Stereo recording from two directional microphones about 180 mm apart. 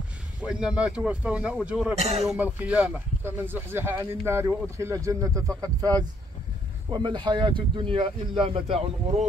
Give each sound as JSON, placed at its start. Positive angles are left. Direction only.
{"t": 0.4, "sound": "speech", "side_deg": -5}
{"t": 2.0, "sound": "speech", "side_deg": -35}
{"t": 2.3, "sound": "speech", "side_deg": -10}